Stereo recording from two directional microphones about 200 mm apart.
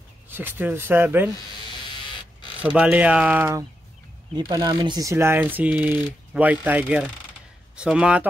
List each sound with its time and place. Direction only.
0.3 s speech: 10° right (ahead or behind)
1.3 s electric shaver: 20° left (ahead or behind)
2.6 s a man's voice: 5° right (ahead or behind)